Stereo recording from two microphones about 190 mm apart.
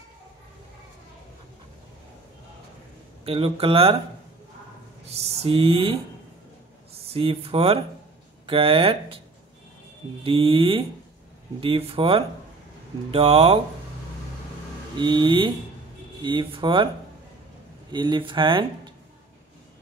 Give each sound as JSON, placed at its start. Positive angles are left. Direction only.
{"t": 3.3, "sound": "speech", "side_deg": -30}
{"t": 5.1, "sound": "speech", "side_deg": -30}
{"t": 10.2, "sound": "speech", "side_deg": -30}
{"t": 15.0, "sound": "speech", "side_deg": -25}
{"t": 17.9, "sound": "speech", "side_deg": -25}